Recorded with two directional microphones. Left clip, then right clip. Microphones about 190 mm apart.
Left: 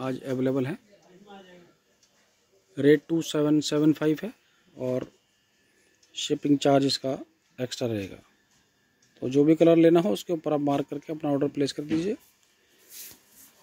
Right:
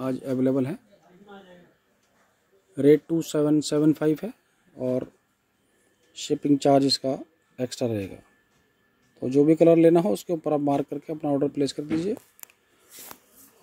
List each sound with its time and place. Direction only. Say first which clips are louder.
0.0 s speech: right 3 dB; centre (ahead or behind)
2.7 s speech: right 2 dB; 5° right (ahead or behind)
6.1 s speech: right 1 dB; centre (ahead or behind)
9.2 s speech: right 2 dB; 5° right (ahead or behind)